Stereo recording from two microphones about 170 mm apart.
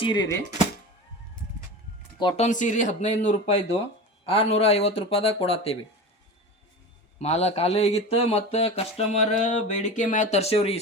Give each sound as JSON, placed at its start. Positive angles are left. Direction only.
{"t": 0.0, "sound": "speech", "side_deg": 25}
{"t": 2.3, "sound": "speech", "side_deg": 45}
{"t": 7.2, "sound": "speech", "side_deg": 40}